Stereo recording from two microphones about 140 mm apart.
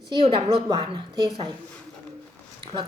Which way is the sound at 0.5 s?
35° right (ahead or behind).